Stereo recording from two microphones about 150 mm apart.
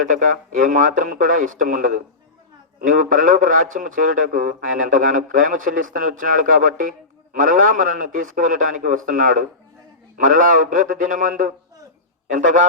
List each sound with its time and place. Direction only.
0.1 s a man's voice: 60° right (ahead or behind)